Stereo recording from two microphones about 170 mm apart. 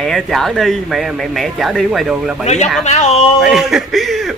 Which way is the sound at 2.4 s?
40° left (ahead or behind).